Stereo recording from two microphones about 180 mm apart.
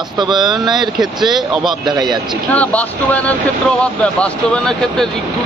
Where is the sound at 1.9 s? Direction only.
25° right (ahead or behind).